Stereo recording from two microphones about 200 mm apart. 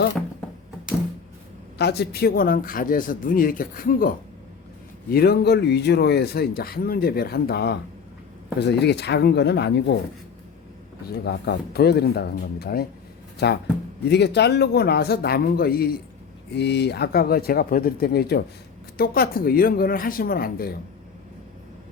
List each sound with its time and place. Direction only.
1.8 s speech: 55° left (ahead or behind)
5.1 s speech: 50° left (ahead or behind)
11.0 s speech: 55° left (ahead or behind)